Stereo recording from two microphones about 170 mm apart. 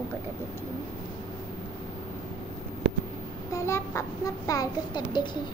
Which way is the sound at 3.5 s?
15° left (ahead or behind).